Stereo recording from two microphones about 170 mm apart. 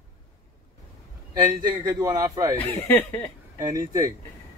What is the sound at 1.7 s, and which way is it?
Speech, 20° right (ahead or behind).